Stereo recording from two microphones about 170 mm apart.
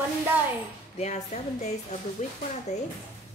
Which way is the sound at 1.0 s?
40° left (ahead or behind).